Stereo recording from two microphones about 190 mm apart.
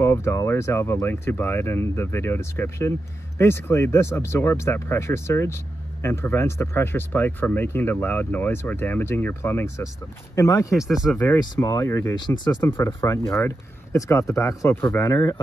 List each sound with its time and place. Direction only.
0.0 s speech: 15° left (ahead or behind)
10.8 s speech: centre (ahead or behind)
11.1 s speech: 15° left (ahead or behind)